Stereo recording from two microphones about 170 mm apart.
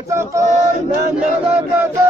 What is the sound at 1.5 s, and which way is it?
Speech, 10° right (ahead or behind).